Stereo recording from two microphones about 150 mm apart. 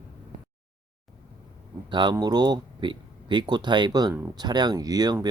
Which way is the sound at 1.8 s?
30° right (ahead or behind).